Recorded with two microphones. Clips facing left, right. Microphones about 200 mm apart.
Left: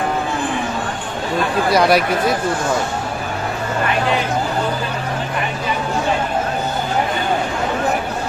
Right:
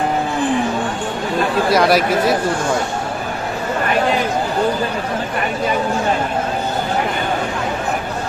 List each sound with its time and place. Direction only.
1.7 s speech: centre (ahead or behind)